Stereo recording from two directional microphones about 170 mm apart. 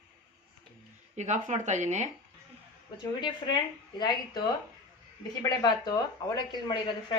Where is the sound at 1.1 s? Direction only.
45° right (ahead or behind).